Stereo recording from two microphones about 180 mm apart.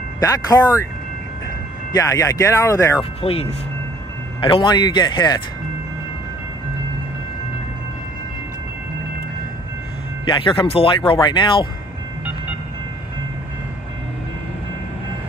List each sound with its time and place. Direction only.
0.2 s speech: 20° left (ahead or behind)
1.9 s speech: 20° left (ahead or behind)
3.2 s speech: 35° left (ahead or behind)
10.2 s speech: 25° left (ahead or behind)